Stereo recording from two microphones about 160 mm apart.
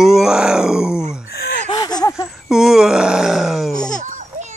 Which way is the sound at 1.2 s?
80° left.